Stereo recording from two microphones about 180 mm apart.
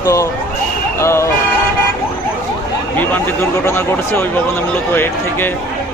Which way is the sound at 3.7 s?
10° left (ahead or behind).